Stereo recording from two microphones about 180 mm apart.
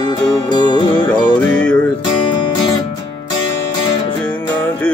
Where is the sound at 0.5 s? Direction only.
25° left (ahead or behind).